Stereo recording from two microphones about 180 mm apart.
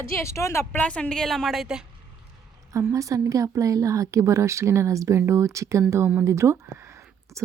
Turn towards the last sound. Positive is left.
turn(degrees=-15)  # may be behind; listen again after turning